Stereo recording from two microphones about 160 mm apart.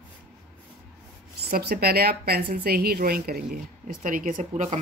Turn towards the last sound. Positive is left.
turn(degrees=-50)  # may be behind; listen again after turning